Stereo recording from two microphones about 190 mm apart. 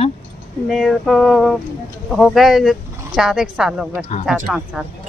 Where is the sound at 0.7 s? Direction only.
Centre (ahead or behind).